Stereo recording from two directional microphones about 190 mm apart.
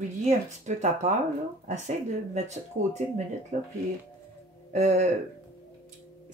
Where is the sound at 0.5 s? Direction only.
35° right (ahead or behind).